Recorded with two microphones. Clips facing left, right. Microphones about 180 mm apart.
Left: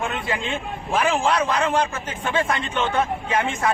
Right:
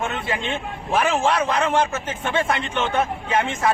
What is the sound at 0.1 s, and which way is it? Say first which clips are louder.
A man's voice: even; 25° right (ahead or behind).